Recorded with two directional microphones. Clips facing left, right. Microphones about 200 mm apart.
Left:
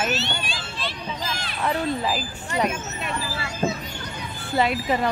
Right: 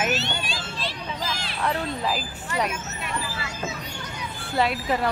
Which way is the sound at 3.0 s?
30° left (ahead or behind).